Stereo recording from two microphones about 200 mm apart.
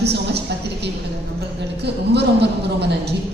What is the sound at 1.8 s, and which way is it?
Speech, 55° right (ahead or behind).